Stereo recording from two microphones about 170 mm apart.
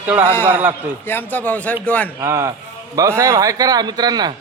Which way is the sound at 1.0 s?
10° left (ahead or behind).